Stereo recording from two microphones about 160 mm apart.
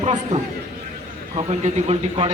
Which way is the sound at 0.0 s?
40° right (ahead or behind).